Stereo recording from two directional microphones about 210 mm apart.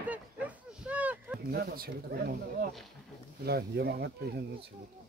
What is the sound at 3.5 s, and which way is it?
Speech, 50° right (ahead or behind).